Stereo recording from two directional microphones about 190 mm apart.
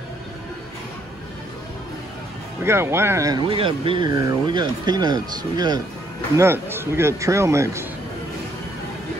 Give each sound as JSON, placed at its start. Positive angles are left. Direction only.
{"t": 2.6, "sound": "a man's voice", "side_deg": -15}